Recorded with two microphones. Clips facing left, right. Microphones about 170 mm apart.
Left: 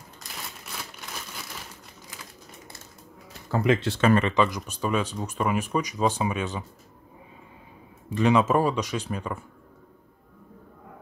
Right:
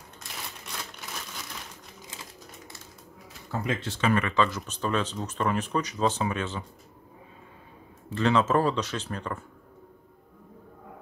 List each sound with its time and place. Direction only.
0.2 s crumpling: centre (ahead or behind)
3.5 s speech: 85° left; by 4.1 s 65° left (ahead or behind)
4.3 s speech: 15° left (ahead or behind)
8.1 s speech: 15° left (ahead or behind)